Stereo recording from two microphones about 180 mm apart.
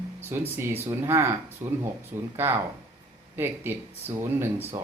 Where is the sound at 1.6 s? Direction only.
45° right (ahead or behind).